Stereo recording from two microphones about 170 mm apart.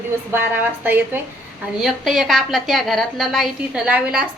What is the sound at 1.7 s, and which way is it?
A woman's voice, centre (ahead or behind).